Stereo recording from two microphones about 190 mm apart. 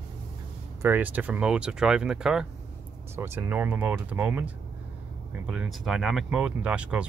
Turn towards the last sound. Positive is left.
turn(degrees=-5)  # may be behind; listen again after turning